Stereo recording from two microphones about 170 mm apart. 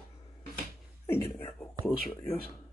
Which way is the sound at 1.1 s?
15° left (ahead or behind).